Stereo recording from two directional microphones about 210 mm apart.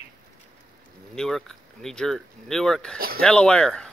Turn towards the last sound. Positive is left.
turn(degrees=5)  # may be behind; listen again after turning